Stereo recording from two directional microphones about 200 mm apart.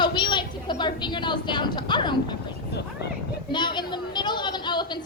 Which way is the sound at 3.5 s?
20° left (ahead or behind).